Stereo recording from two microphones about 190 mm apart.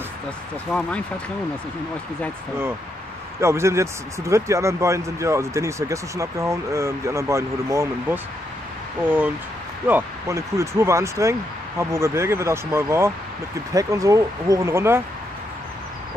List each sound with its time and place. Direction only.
0.7 s speech: 5° left (ahead or behind)
3.3 s speech: 15° right (ahead or behind)